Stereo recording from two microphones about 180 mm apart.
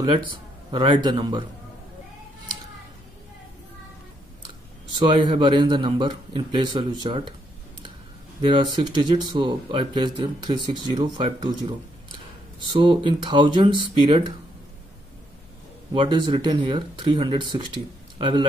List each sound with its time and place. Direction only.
0.7 s speech: 25° right (ahead or behind)
4.9 s speech: 25° right (ahead or behind)
8.4 s speech: 25° right (ahead or behind)
15.9 s speech: 25° right (ahead or behind)
18.1 s a sound: 25° right (ahead or behind)